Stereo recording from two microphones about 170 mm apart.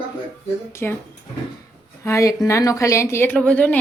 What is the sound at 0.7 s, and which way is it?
Speech, 15° left (ahead or behind).